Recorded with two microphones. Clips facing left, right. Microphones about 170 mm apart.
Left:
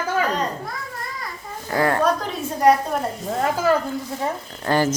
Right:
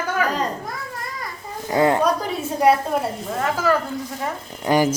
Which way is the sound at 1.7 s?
20° right (ahead or behind).